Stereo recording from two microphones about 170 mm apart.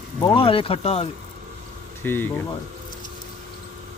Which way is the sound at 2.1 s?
10° left (ahead or behind).